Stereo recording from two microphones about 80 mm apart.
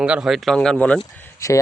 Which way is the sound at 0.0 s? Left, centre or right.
Centre.